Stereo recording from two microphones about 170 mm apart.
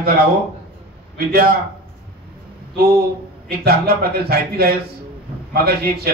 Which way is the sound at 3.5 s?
65° right (ahead or behind).